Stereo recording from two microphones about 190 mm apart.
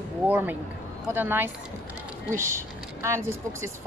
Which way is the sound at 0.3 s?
10° right (ahead or behind).